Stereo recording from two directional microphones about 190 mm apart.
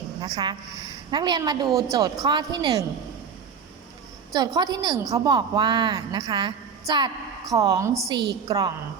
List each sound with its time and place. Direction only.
0.2 s a woman's voice: 25° right (ahead or behind)
4.4 s a woman's voice: 20° right (ahead or behind)